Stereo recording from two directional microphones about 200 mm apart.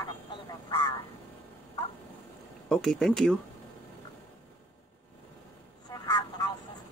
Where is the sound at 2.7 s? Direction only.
5° left (ahead or behind).